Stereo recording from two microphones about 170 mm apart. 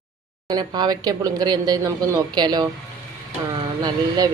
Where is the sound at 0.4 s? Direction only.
25° right (ahead or behind).